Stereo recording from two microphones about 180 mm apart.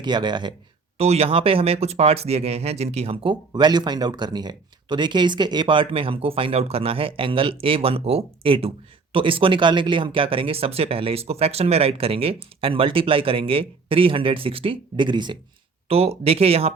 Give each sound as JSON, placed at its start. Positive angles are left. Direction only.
{"t": 0.0, "sound": "speech", "side_deg": -25}
{"t": 0.9, "sound": "speech", "side_deg": -35}